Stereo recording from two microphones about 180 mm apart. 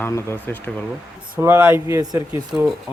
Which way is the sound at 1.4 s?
10° right (ahead or behind).